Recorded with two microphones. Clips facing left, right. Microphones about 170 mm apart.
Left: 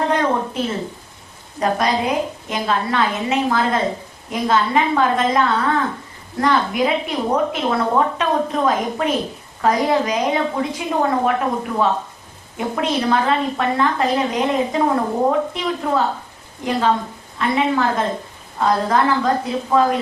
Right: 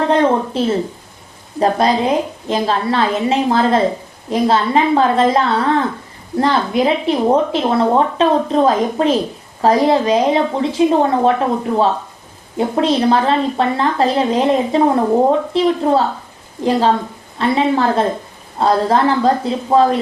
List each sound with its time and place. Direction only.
0.1 s a woman's voice: 30° right (ahead or behind)
17.3 s a woman's voice: 30° right (ahead or behind)